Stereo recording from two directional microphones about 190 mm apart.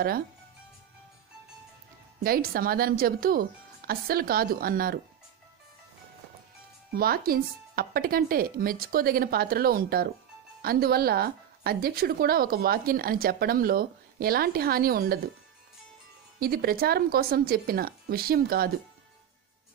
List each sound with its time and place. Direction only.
2.1 s speech: 50° right (ahead or behind)
7.0 s speech: 50° right (ahead or behind)
16.3 s speech: 55° right (ahead or behind)